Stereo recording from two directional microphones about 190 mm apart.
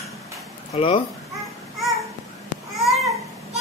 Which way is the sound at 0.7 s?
30° left (ahead or behind).